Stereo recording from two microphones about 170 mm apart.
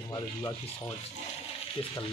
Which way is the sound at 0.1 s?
15° left (ahead or behind).